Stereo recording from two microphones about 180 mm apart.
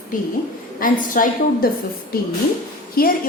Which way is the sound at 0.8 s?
50° left (ahead or behind).